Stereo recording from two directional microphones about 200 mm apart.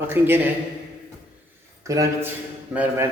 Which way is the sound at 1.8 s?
15° right (ahead or behind).